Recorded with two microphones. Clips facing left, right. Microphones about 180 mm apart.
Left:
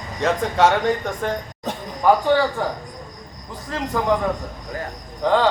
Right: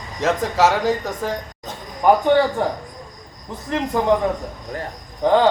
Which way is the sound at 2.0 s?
20° right (ahead or behind).